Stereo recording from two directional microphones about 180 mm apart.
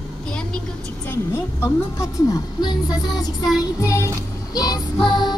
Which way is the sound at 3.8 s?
15° left (ahead or behind).